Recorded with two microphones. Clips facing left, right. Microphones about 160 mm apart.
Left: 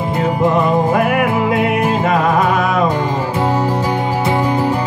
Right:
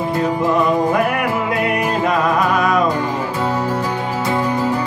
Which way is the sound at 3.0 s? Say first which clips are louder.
Left 3 dB; 20° left (ahead or behind).